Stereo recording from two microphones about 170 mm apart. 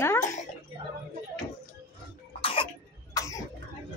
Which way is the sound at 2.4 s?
30° left (ahead or behind).